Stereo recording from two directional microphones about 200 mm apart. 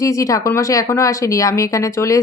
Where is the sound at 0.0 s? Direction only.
15° left (ahead or behind).